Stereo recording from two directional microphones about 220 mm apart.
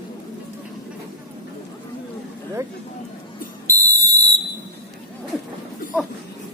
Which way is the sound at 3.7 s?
15° right (ahead or behind).